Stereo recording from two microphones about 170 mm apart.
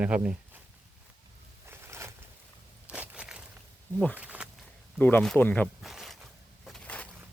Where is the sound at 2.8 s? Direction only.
10° right (ahead or behind).